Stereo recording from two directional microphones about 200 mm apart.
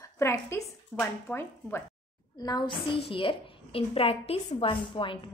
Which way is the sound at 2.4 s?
20° left (ahead or behind).